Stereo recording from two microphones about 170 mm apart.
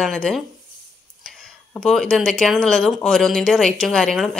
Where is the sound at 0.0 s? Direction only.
5° left (ahead or behind).